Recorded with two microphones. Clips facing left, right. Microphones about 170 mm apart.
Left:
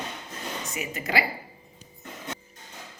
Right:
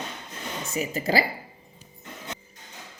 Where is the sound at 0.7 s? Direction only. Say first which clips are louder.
Right 4 dB; 35° right (ahead or behind).